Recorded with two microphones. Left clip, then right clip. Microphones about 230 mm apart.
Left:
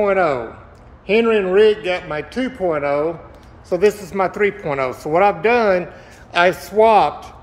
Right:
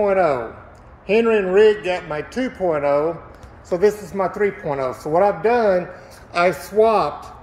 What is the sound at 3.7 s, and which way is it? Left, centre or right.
A woman's voice, centre.